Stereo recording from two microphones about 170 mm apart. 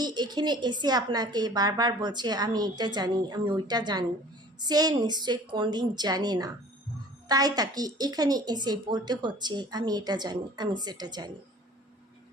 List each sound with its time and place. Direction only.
0.0 s a woman's voice: 25° right (ahead or behind)